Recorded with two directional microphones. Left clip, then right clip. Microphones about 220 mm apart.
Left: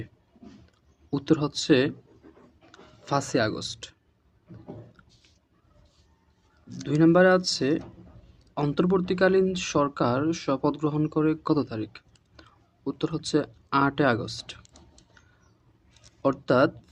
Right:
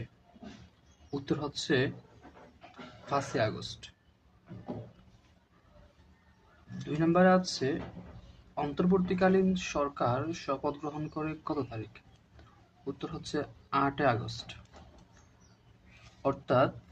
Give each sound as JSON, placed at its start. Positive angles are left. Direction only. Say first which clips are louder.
{"t": 1.1, "sound": "speech", "louder": "left 9 dB", "side_deg": 45}
{"t": 3.1, "sound": "speech", "louder": "left 5 dB", "side_deg": 45}
{"t": 6.8, "sound": "speech", "louder": "left 7 dB", "side_deg": 45}
{"t": 16.2, "sound": "speech", "louder": "left 5 dB", "side_deg": 45}